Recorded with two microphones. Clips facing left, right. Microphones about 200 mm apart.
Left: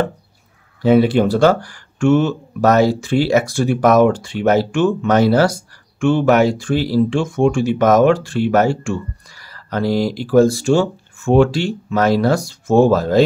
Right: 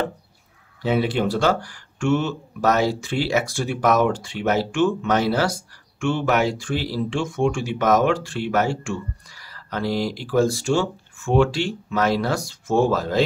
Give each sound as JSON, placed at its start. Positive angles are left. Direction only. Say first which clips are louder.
{"t": 0.8, "sound": "speech", "louder": "left 8 dB", "side_deg": 45}